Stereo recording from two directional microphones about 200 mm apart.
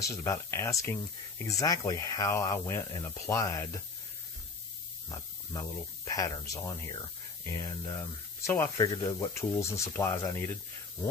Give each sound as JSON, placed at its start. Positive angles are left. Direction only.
{"t": 0.0, "sound": "speech", "side_deg": 15}
{"t": 5.1, "sound": "speech", "side_deg": 15}